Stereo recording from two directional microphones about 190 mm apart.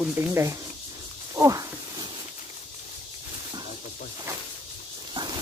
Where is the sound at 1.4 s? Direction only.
20° right (ahead or behind).